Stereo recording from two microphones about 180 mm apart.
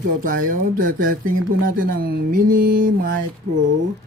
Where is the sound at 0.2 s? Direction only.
50° right (ahead or behind).